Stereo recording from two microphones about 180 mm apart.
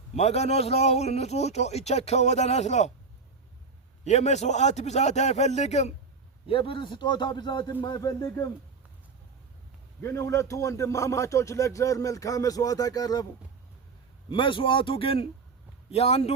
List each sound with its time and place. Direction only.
0.2 s a man's voice: 35° left (ahead or behind)
4.0 s a man's voice: 40° left (ahead or behind); by 8.4 s 20° left (ahead or behind)
10.0 s speech: 15° left (ahead or behind)
14.3 s a man's voice: 25° left (ahead or behind)